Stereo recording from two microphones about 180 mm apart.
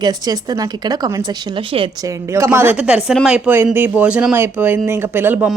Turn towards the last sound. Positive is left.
turn(degrees=-10)  # may be behind; listen again after turning